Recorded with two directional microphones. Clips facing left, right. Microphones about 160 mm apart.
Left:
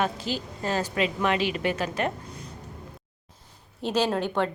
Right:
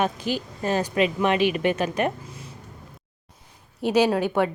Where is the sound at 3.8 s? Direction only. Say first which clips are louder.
Right 5 dB; 10° right (ahead or behind).